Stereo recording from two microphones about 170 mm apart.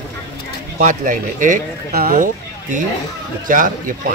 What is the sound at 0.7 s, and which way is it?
Speech, 50° right (ahead or behind).